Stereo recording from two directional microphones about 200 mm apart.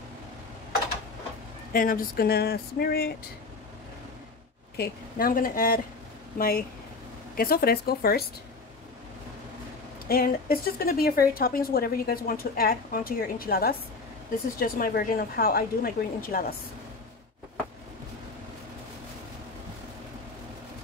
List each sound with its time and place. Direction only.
1.7 s speech: 45° left (ahead or behind)
4.7 s speech: 50° left (ahead or behind)
10.0 s speech: 50° left (ahead or behind)